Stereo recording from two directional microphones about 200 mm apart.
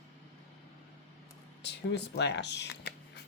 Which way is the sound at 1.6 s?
55° left (ahead or behind).